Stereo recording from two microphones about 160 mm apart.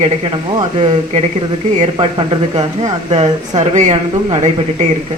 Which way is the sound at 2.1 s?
30° right (ahead or behind).